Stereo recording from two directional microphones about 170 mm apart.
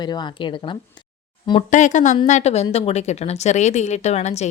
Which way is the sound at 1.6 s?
45° left (ahead or behind).